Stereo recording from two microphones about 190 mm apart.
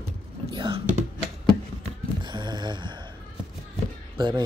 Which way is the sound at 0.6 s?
25° right (ahead or behind).